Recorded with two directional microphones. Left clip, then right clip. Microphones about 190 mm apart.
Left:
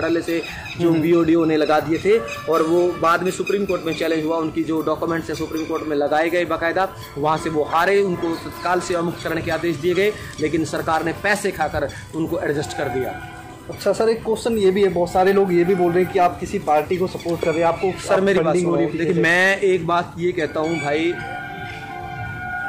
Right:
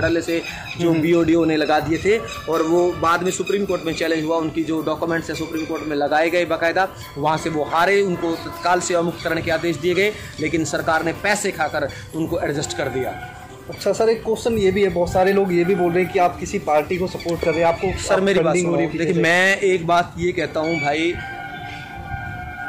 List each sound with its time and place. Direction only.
0.0 s speech: 20° right (ahead or behind)
13.8 s speech: 15° left (ahead or behind)
18.0 s speech: 20° right (ahead or behind)